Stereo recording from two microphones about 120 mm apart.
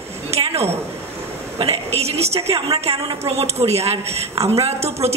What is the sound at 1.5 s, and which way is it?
A woman's voice, 55° right (ahead or behind).